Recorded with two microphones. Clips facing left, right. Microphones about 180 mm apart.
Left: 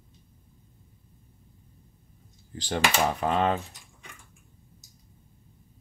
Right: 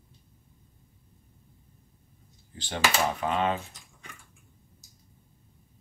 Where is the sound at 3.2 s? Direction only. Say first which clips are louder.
Left 2 dB; 40° left (ahead or behind).